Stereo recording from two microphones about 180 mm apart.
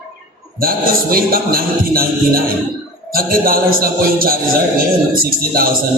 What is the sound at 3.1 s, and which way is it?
A man's voice, 55° right (ahead or behind).